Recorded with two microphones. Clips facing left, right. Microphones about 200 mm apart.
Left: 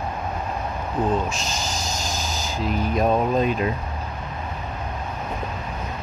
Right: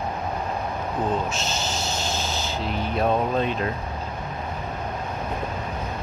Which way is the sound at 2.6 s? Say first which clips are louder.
Left 6 dB; 40° left (ahead or behind).